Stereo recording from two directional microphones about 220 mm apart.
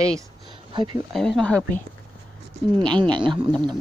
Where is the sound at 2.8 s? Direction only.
20° right (ahead or behind).